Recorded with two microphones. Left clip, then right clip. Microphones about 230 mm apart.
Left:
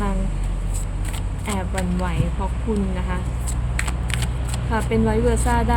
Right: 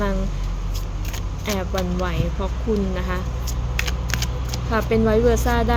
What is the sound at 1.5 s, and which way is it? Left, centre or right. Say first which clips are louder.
Speech: right 2 dB; centre.